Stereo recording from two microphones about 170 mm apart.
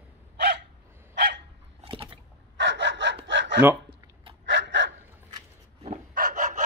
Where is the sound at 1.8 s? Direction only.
30° right (ahead or behind).